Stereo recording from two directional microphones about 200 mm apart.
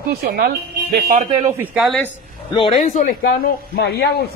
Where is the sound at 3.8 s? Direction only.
55° left (ahead or behind).